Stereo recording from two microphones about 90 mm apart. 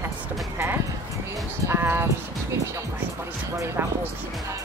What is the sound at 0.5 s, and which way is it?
Speech, 25° right (ahead or behind).